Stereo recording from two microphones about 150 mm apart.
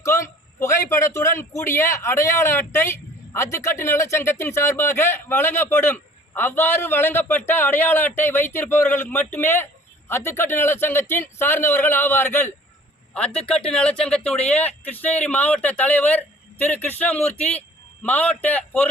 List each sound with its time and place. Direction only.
0.0 s a man's voice: 20° left (ahead or behind)